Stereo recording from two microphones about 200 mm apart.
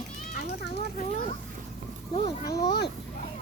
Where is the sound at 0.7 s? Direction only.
35° left (ahead or behind).